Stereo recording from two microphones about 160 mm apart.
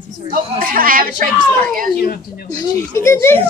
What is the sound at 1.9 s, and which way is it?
Speech, 65° left (ahead or behind).